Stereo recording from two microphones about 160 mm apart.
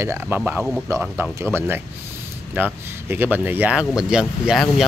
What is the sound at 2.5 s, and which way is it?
Speech, 10° right (ahead or behind).